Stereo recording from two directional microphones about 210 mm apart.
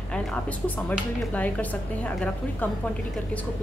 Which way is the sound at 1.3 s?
5° left (ahead or behind).